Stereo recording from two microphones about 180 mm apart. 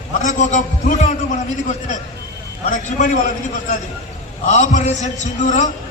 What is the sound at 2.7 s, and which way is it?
Speech, 45° left (ahead or behind).